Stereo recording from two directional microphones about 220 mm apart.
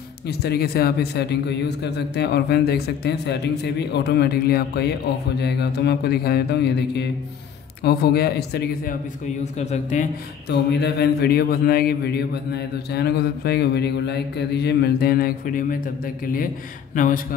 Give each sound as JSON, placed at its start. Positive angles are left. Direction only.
{"t": 0.3, "sound": "speech", "side_deg": 45}
{"t": 9.4, "sound": "speech", "side_deg": 30}
{"t": 10.5, "sound": "speech", "side_deg": 50}
{"t": 16.9, "sound": "speech", "side_deg": 35}